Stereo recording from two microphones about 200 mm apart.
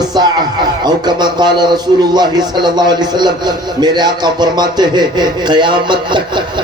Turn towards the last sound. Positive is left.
turn(degrees=-25)  # may be behind; listen again after turning